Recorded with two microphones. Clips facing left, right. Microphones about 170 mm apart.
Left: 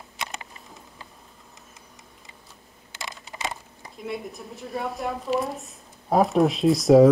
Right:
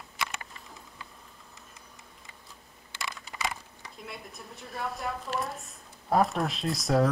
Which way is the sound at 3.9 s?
Centre (ahead or behind).